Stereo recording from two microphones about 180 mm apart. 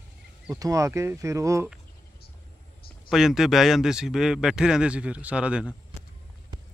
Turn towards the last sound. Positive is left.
turn(degrees=-5)  # may be behind; listen again after turning